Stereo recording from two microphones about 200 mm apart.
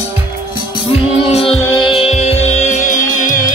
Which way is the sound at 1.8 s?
25° left (ahead or behind).